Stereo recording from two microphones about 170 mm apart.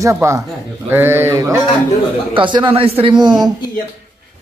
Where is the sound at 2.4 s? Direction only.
30° right (ahead or behind).